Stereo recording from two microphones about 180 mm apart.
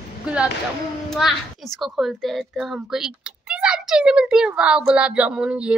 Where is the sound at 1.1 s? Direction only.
Centre (ahead or behind).